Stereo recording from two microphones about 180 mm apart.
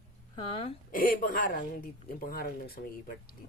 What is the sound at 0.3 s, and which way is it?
Speech, 30° left (ahead or behind).